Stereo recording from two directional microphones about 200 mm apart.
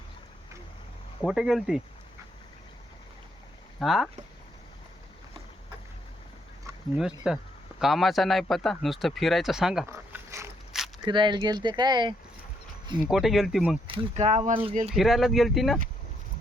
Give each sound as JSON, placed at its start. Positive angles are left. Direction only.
{"t": 1.2, "sound": "speech", "side_deg": 0}
{"t": 3.8, "sound": "speech", "side_deg": 0}
{"t": 7.3, "sound": "speech", "side_deg": -5}
{"t": 9.8, "sound": "a sound", "side_deg": -15}
{"t": 11.0, "sound": "speech", "side_deg": -25}
{"t": 13.1, "sound": "speech", "side_deg": 0}
{"t": 13.8, "sound": "speech", "side_deg": -25}
{"t": 14.8, "sound": "speech", "side_deg": 0}